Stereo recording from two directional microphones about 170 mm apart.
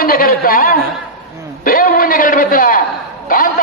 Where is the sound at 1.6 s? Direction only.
55° left (ahead or behind).